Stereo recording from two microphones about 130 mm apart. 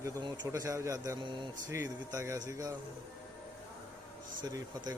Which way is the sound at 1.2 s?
35° right (ahead or behind).